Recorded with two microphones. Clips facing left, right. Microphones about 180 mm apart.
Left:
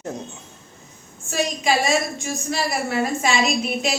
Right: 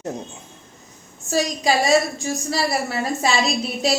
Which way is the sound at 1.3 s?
35° right (ahead or behind).